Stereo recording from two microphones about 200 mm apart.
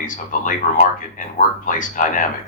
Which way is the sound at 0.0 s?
40° left (ahead or behind).